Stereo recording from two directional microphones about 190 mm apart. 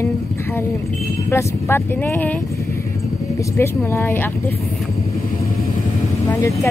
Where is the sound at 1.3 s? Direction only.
10° left (ahead or behind).